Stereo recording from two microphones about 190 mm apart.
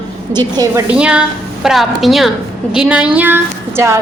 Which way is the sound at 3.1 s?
10° right (ahead or behind).